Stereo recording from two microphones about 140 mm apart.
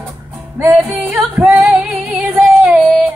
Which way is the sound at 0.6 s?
15° right (ahead or behind).